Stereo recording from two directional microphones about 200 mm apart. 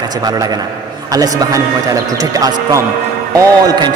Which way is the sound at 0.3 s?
20° right (ahead or behind).